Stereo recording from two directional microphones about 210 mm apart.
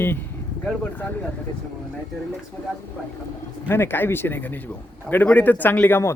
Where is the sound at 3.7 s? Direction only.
10° left (ahead or behind).